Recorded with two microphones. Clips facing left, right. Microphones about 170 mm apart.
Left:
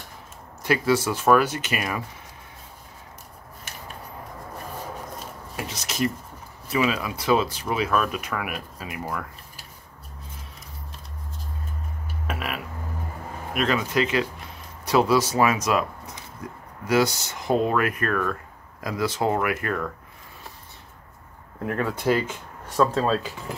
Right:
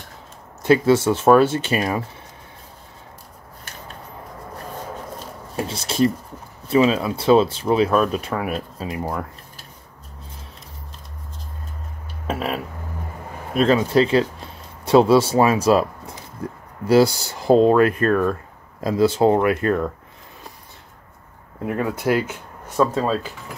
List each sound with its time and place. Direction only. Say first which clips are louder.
0.6 s speech: right 6 dB; 25° right (ahead or behind)
5.6 s speech: right 7 dB; 30° right (ahead or behind)
12.3 s a sound: right 7 dB; 30° right (ahead or behind)
13.5 s speech: right 7 dB; 30° right (ahead or behind)
21.6 s speech: right 2 dB; 10° right (ahead or behind)